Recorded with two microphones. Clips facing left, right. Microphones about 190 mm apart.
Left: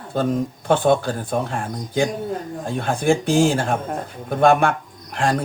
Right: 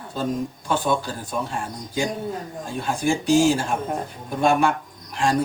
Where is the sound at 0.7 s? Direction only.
55° left (ahead or behind).